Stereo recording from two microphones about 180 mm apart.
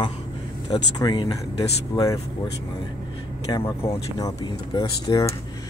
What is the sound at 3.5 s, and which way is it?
Speech, 15° left (ahead or behind).